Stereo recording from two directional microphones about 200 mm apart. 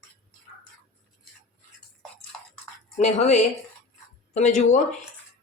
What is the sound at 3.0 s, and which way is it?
Speech, 35° left (ahead or behind).